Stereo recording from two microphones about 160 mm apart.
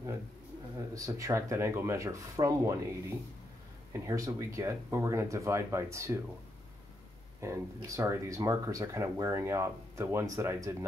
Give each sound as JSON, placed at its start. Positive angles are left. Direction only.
{"t": 0.7, "sound": "speech", "side_deg": -20}
{"t": 3.9, "sound": "speech", "side_deg": -20}
{"t": 7.3, "sound": "speech", "side_deg": -20}